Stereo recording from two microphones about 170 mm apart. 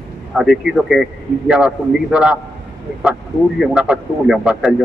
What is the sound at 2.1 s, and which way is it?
Speech, 5° right (ahead or behind).